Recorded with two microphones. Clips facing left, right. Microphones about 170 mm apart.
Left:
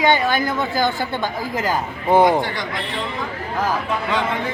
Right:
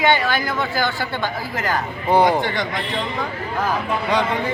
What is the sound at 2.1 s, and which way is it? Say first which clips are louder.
Speech: left 1 dB; 20° left (ahead or behind).